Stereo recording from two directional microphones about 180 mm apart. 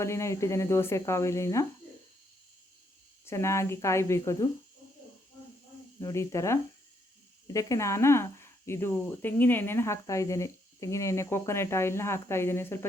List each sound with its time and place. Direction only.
0.0 s speech: 15° left (ahead or behind)
3.2 s speech: 15° left (ahead or behind)
6.0 s speech: 15° left (ahead or behind)